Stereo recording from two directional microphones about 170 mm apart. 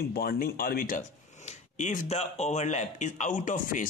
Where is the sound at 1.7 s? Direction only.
45° left (ahead or behind).